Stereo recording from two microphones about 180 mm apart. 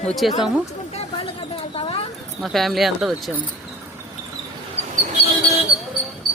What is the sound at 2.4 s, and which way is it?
Speech, centre (ahead or behind).